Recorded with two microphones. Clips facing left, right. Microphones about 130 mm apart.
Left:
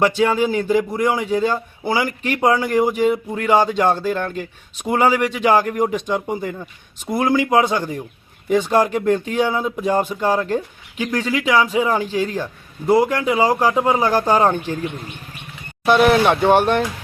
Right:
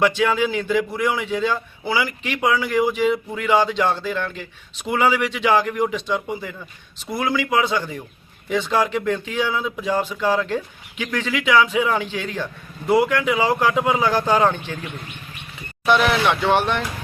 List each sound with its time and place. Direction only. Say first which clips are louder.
0.0 s a man's voice: left 2 dB; 40° left (ahead or behind)
15.9 s speech: left 4 dB; 45° left (ahead or behind)